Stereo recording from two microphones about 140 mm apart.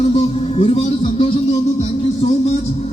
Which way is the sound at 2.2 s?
50° left (ahead or behind).